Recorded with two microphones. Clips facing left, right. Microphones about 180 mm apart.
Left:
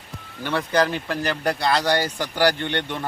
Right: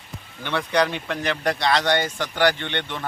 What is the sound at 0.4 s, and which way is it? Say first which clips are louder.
Speech: left 1 dB; 5° left (ahead or behind).